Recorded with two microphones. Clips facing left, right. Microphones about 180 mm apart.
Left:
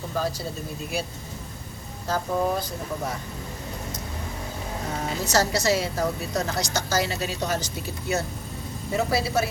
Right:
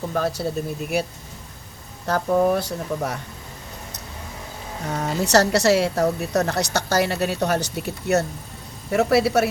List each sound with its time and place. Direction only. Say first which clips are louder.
0.1 s a woman's voice: right 4 dB; 60° right (ahead or behind)
4.9 s a woman's voice: right 6 dB; 70° right (ahead or behind)